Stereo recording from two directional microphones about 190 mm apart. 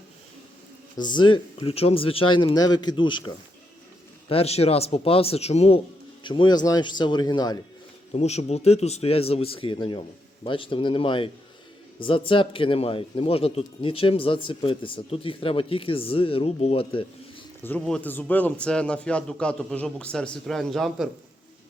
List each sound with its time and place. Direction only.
1.0 s speech: 25° left (ahead or behind)
8.1 s speech: 35° left (ahead or behind)
17.6 s a man's voice: 10° left (ahead or behind)